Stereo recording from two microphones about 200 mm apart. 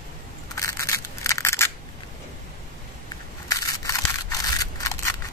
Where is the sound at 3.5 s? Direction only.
15° left (ahead or behind).